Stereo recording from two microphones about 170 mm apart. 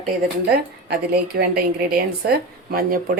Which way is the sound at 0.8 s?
65° right (ahead or behind).